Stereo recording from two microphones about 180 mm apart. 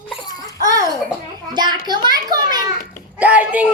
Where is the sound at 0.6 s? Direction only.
20° right (ahead or behind).